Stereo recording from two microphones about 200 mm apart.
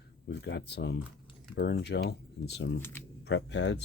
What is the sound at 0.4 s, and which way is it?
Speech, 60° left (ahead or behind).